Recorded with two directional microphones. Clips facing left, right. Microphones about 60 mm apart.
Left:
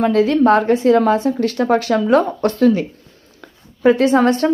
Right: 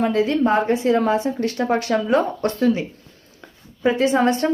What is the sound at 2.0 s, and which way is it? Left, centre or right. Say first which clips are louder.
Speech: left 4 dB; left.